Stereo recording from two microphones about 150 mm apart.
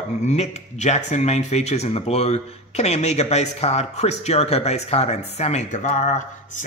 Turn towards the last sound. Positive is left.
turn(degrees=50)  # may be behind; listen again after turning